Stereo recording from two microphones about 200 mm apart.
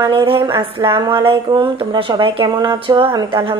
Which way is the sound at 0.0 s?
25° right (ahead or behind).